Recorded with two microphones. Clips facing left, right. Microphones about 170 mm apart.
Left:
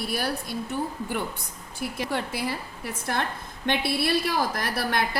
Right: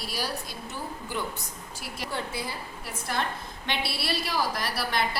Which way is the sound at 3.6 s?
50° left (ahead or behind).